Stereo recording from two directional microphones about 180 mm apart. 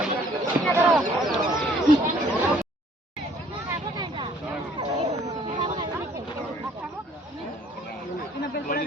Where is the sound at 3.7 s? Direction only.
25° right (ahead or behind).